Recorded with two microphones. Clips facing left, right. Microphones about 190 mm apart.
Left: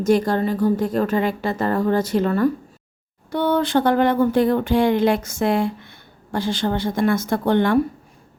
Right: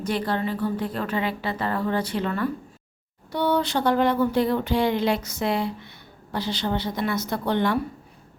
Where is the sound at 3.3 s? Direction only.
50° left (ahead or behind).